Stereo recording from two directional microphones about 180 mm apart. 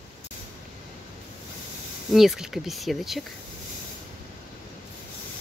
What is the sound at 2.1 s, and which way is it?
Speech, centre (ahead or behind).